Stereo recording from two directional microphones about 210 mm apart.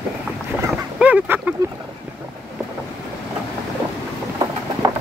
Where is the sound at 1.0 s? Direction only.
5° right (ahead or behind).